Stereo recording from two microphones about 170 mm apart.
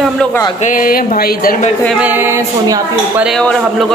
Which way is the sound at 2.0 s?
15° right (ahead or behind).